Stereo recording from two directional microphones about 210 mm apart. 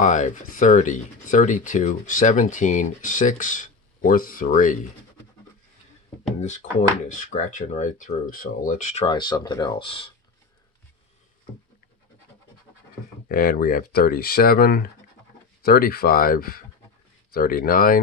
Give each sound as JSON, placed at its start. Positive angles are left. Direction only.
{"t": 0.0, "sound": "speech", "side_deg": 35}
{"t": 7.1, "sound": "speech", "side_deg": 35}
{"t": 9.0, "sound": "speech", "side_deg": 20}
{"t": 13.3, "sound": "speech", "side_deg": 45}